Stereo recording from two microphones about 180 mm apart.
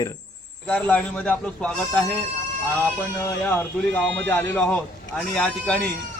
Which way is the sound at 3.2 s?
10° left (ahead or behind).